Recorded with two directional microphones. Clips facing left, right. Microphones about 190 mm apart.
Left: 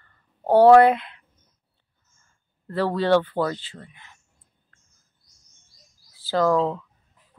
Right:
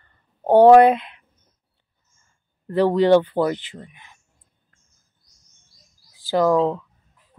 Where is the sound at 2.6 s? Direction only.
15° right (ahead or behind).